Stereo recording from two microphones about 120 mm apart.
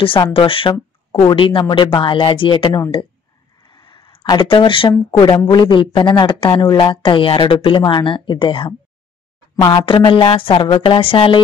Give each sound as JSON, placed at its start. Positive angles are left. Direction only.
{"t": 0.0, "sound": "speech", "side_deg": 50}
{"t": 3.6, "sound": "a sound", "side_deg": 40}
{"t": 5.5, "sound": "speech", "side_deg": 40}